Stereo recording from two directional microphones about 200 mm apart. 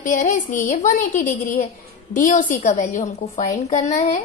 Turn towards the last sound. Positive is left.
turn(degrees=35)  # may be behind; listen again after turning